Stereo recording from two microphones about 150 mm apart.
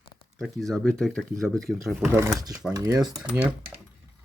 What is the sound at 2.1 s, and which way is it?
Speech, 20° right (ahead or behind).